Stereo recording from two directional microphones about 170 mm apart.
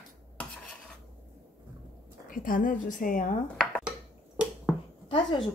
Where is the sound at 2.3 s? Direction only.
55° left (ahead or behind).